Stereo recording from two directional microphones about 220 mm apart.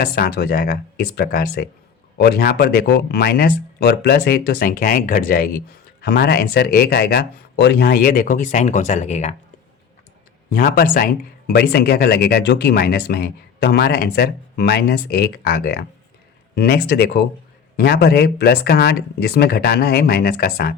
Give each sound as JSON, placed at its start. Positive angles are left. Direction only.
{"t": 0.0, "sound": "speech", "side_deg": 45}
{"t": 10.5, "sound": "speech", "side_deg": 45}